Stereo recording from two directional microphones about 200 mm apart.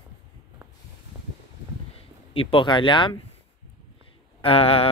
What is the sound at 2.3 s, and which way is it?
Speech, 25° left (ahead or behind).